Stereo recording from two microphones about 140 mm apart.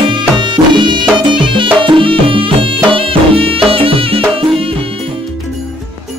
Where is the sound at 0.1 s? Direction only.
35° right (ahead or behind).